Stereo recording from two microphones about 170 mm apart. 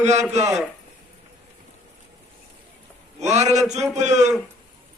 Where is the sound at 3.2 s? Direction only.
40° right (ahead or behind).